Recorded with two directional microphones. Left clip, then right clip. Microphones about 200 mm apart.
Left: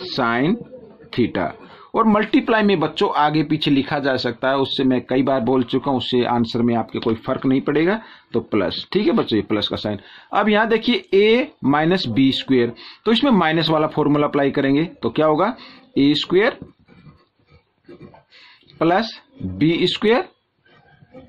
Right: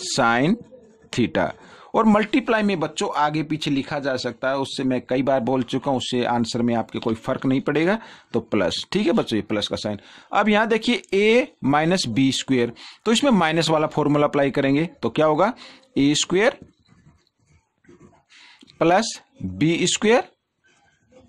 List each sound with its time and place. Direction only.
0.0 s speech: 50° right (ahead or behind)
18.8 s speech: 50° right (ahead or behind)